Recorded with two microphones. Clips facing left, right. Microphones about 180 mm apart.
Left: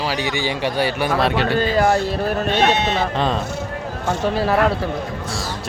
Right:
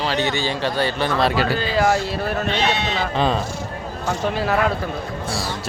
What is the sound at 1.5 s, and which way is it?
Speech, 45° left (ahead or behind).